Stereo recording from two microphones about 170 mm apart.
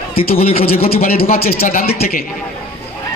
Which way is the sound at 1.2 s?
35° left (ahead or behind).